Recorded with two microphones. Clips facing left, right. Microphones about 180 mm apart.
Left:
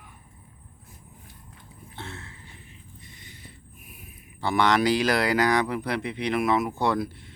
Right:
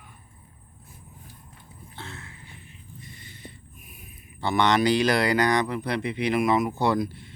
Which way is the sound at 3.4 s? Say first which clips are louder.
Right 3 dB; 10° left (ahead or behind).